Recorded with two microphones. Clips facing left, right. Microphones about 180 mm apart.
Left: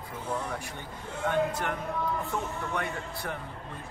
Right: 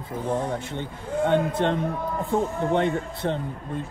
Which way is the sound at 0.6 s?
20° right (ahead or behind).